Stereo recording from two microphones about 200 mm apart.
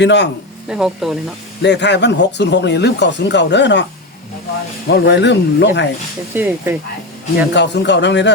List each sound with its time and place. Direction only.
0.0 s speech: 60° left (ahead or behind)
0.7 s speech: 5° right (ahead or behind)
1.6 s speech: 60° left (ahead or behind)
4.9 s speech: 55° left (ahead or behind)
6.3 s speech: 10° right (ahead or behind)
7.5 s speech: 60° left (ahead or behind)